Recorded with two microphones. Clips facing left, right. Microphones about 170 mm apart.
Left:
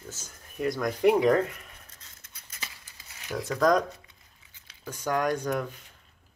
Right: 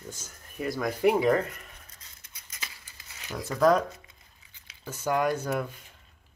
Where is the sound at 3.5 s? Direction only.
5° right (ahead or behind).